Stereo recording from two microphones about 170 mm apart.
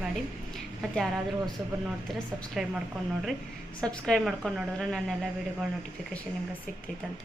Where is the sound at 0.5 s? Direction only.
Centre (ahead or behind).